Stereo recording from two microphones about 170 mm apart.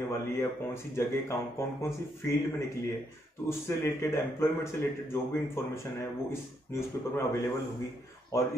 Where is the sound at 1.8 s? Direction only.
15° left (ahead or behind).